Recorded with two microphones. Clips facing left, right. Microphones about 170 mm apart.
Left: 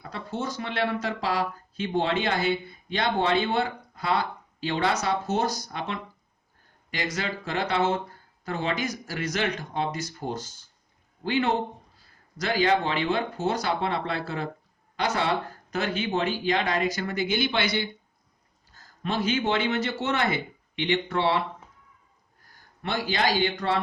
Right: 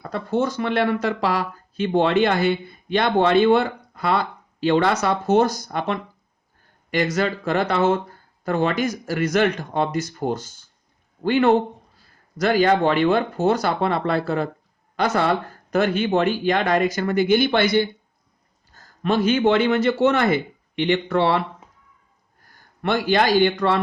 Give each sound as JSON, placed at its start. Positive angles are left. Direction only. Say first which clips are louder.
{"t": 0.0, "sound": "speech", "louder": "right 10 dB", "side_deg": -55}
{"t": 19.0, "sound": "speech", "louder": "right 8 dB", "side_deg": -55}
{"t": 22.8, "sound": "speech", "louder": "right 7 dB", "side_deg": -60}